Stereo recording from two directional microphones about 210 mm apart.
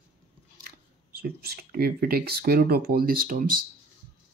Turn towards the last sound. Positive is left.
turn(degrees=-40)  # may be behind; listen again after turning